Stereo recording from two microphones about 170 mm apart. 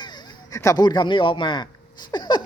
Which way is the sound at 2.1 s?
25° left (ahead or behind).